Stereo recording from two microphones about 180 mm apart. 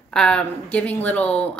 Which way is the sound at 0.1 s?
5° left (ahead or behind).